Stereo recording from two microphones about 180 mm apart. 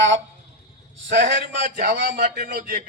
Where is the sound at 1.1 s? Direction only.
75° right (ahead or behind).